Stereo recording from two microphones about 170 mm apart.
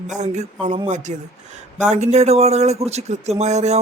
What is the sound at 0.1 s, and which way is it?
Speech, 45° right (ahead or behind).